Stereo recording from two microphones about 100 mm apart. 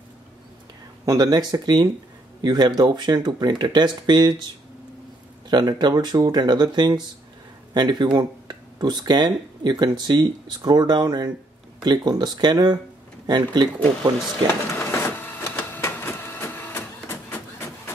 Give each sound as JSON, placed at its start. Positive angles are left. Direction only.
{"t": 1.0, "sound": "speech", "side_deg": -40}
{"t": 5.5, "sound": "speech", "side_deg": -45}
{"t": 14.7, "sound": "printer", "side_deg": 25}